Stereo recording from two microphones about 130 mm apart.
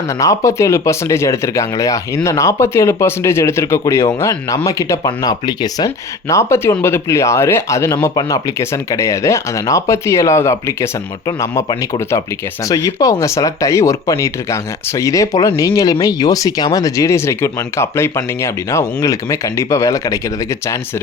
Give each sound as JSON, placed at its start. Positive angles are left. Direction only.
{"t": 0.1, "sound": "speech", "side_deg": 25}